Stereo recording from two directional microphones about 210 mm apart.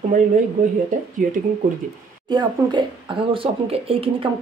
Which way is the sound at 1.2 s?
40° right (ahead or behind).